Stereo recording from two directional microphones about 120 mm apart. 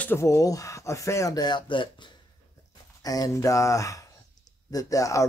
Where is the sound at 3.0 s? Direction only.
30° left (ahead or behind).